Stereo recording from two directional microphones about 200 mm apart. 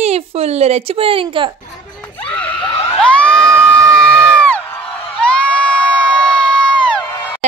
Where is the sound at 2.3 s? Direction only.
5° left (ahead or behind).